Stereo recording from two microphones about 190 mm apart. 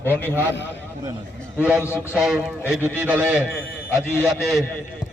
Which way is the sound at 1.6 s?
5° right (ahead or behind).